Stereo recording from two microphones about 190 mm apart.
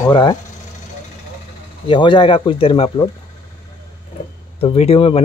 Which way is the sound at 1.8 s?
25° left (ahead or behind).